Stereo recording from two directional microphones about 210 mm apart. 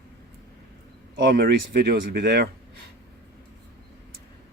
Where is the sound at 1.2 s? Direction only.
50° right (ahead or behind).